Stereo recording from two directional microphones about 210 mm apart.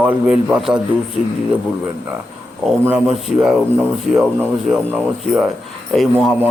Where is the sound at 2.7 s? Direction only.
5° right (ahead or behind).